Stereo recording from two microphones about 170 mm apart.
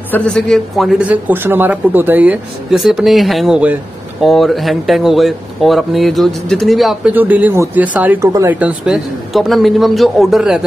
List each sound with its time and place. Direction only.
0.1 s speech: 5° left (ahead or behind)